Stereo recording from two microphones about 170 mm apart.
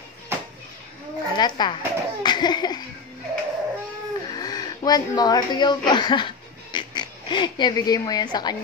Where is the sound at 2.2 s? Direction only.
25° left (ahead or behind).